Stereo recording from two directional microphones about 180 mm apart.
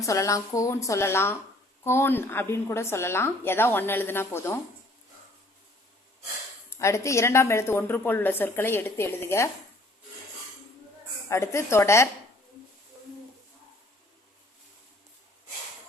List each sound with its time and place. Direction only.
0.0 s a woman's voice: 15° left (ahead or behind)
6.7 s a woman's voice: 15° left (ahead or behind)
11.3 s a woman's voice: 15° left (ahead or behind)